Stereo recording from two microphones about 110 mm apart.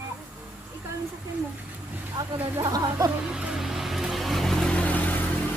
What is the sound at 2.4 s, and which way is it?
Speech, 25° right (ahead or behind).